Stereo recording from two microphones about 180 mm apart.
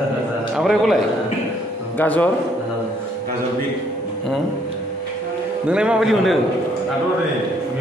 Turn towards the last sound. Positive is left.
turn(degrees=0)  # may be behind; listen again after turning